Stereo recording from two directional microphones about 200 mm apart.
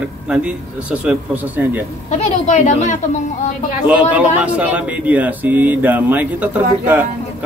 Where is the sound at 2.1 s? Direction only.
35° left (ahead or behind).